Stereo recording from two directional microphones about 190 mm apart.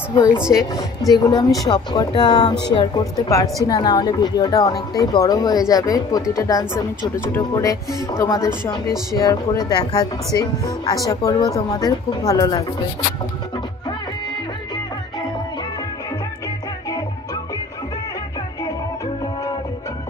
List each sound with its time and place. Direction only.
0.1 s speech: 20° left (ahead or behind)